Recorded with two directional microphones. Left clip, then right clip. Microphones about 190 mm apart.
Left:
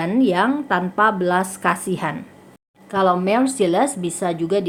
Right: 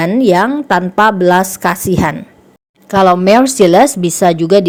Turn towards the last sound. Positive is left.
turn(degrees=-40)  # may be behind; listen again after turning